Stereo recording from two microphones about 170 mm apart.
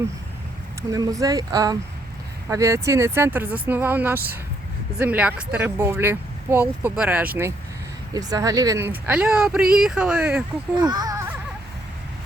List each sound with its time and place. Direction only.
0.8 s speech: 20° right (ahead or behind)
8.1 s speech: 20° right (ahead or behind)
9.0 s speech: 10° right (ahead or behind)
10.8 s a sound: 25° right (ahead or behind)